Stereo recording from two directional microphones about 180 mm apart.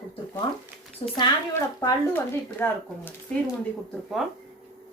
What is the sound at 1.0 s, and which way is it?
Speech, 30° left (ahead or behind).